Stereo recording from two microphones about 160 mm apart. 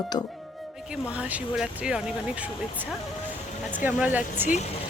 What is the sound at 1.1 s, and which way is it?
Speech, 5° right (ahead or behind).